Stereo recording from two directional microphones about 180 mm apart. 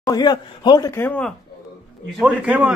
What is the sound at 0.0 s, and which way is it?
Speech, 25° left (ahead or behind).